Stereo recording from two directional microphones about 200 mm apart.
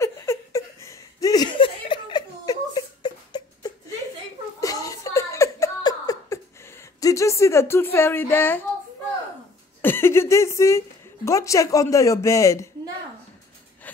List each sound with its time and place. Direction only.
0.0 s chuckle: 15° left (ahead or behind)
4.6 s laughter: 15° left (ahead or behind)
7.0 s speech: 15° left (ahead or behind)
9.8 s speech: 10° left (ahead or behind)